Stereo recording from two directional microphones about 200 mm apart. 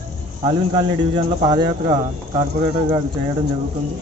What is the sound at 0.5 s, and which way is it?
Speech, 20° right (ahead or behind).